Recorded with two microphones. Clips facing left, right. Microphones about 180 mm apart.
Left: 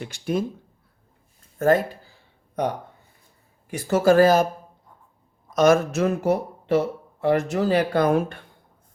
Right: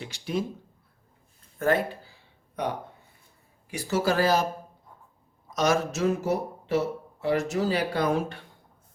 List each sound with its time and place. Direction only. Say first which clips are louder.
0.0 s speech: left 5 dB; 50° left (ahead or behind)
1.5 s speech: left 5 dB; 40° left (ahead or behind)
3.7 s speech: left 8 dB; 50° left (ahead or behind)
5.5 s speech: left 7 dB; 50° left (ahead or behind)